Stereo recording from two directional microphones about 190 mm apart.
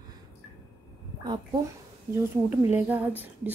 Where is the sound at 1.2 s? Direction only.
20° right (ahead or behind).